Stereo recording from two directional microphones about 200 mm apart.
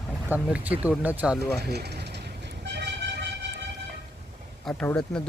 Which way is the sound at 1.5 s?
55° right (ahead or behind).